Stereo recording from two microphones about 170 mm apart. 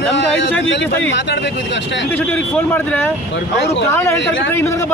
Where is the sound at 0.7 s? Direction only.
90° left.